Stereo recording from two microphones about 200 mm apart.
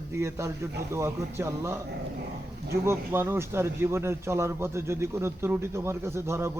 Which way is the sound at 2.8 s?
10° right (ahead or behind).